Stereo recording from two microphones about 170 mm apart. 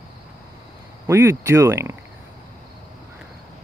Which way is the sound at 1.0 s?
15° right (ahead or behind).